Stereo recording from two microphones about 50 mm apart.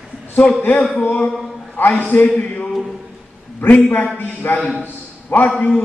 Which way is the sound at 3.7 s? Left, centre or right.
Left.